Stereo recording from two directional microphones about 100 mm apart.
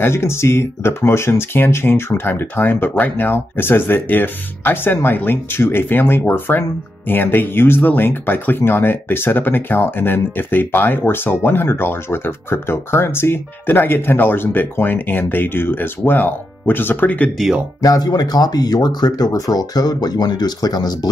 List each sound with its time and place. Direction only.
0.0 s speech: 25° left (ahead or behind)
17.8 s speech: 40° left (ahead or behind)